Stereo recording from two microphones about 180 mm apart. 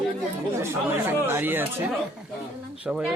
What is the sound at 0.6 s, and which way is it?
Speech, 15° right (ahead or behind).